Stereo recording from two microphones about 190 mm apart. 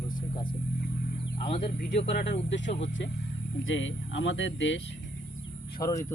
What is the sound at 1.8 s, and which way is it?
Speech, 60° left (ahead or behind).